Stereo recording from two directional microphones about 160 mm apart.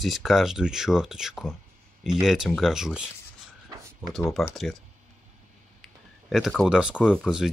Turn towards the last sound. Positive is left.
turn(degrees=-5)  # may be behind; listen again after turning